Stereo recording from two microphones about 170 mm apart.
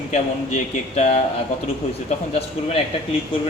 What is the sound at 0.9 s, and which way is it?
Speech, 40° left (ahead or behind).